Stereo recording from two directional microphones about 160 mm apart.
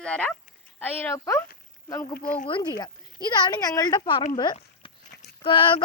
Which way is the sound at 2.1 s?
65° left (ahead or behind).